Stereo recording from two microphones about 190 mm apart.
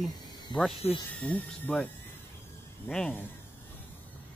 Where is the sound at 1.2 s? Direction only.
5° left (ahead or behind).